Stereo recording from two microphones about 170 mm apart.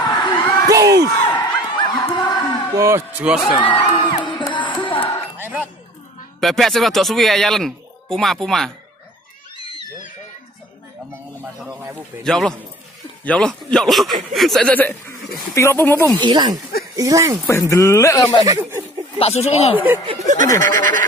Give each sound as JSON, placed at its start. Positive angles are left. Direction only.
{"t": 0.0, "sound": "a sound", "side_deg": 25}
{"t": 0.7, "sound": "a sound", "side_deg": -20}
{"t": 1.4, "sound": "a sound", "side_deg": 25}
{"t": 2.7, "sound": "speech", "side_deg": -15}
{"t": 4.2, "sound": "music", "side_deg": 30}
{"t": 5.4, "sound": "music", "side_deg": -10}
{"t": 6.4, "sound": "speech", "side_deg": 0}
{"t": 12.2, "sound": "speech", "side_deg": 5}
{"t": 16.2, "sound": "speech", "side_deg": -25}
{"t": 17.5, "sound": "speech", "side_deg": 15}
{"t": 18.4, "sound": "speech", "side_deg": -15}
{"t": 19.1, "sound": "speech", "side_deg": 40}
{"t": 19.7, "sound": "speech", "side_deg": -10}
{"t": 20.2, "sound": "goat", "side_deg": -50}